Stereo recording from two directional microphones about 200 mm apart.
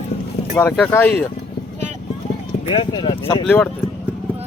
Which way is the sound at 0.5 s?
10° left (ahead or behind).